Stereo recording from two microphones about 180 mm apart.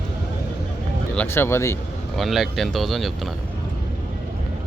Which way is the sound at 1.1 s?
10° left (ahead or behind).